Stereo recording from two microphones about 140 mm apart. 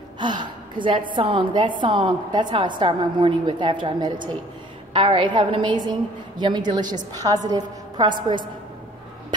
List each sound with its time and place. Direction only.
0.2 s a woman's voice: 35° right (ahead or behind)